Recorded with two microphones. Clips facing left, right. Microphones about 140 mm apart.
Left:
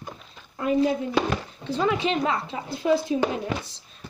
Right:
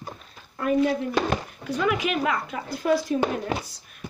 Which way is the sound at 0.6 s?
20° left (ahead or behind).